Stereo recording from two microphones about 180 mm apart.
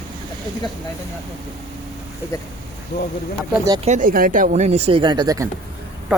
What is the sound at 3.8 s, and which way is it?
Speech, 45° right (ahead or behind).